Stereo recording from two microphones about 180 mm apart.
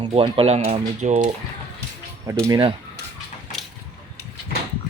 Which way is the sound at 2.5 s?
25° right (ahead or behind).